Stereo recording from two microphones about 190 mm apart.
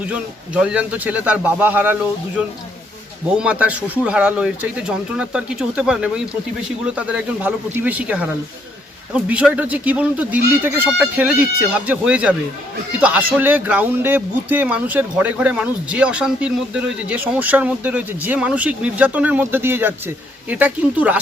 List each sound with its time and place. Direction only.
0.0 s speech: 5° right (ahead or behind)
3.3 s speech: 5° right (ahead or behind)